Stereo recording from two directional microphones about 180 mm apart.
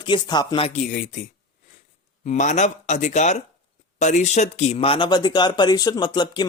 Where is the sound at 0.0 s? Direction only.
25° left (ahead or behind); by 1.2 s 45° left (ahead or behind).